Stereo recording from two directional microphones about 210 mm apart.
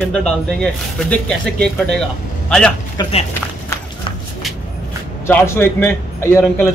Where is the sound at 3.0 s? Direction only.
25° left (ahead or behind).